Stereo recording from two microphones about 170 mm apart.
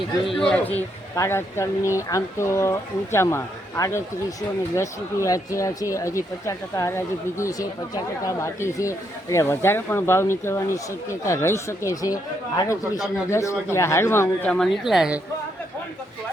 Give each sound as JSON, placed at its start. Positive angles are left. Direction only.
{"t": 0.4, "sound": "speech", "side_deg": 5}